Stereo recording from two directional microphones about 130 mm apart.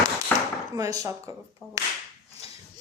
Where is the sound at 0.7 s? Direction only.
25° right (ahead or behind).